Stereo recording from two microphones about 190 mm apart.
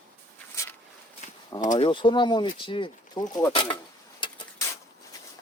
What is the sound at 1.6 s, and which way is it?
Speech, 40° left (ahead or behind).